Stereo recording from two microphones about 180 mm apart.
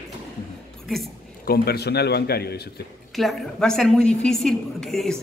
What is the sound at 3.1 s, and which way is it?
A woman's voice, centre (ahead or behind).